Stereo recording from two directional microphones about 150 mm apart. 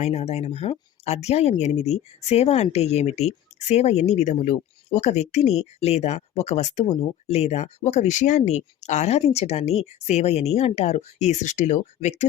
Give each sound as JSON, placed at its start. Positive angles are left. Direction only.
{"t": 0.0, "sound": "speech", "side_deg": 45}